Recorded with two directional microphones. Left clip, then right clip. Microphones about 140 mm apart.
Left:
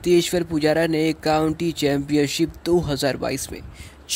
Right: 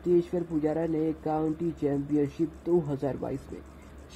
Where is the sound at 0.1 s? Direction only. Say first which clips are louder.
Left 7 dB; 45° left (ahead or behind).